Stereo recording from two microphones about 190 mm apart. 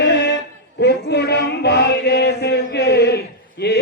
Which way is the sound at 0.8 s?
60° left (ahead or behind).